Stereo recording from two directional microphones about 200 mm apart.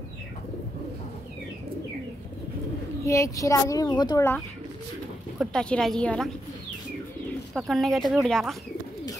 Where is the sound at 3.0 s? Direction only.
15° left (ahead or behind).